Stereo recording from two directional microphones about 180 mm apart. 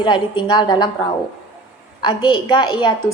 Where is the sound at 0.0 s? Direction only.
25° left (ahead or behind).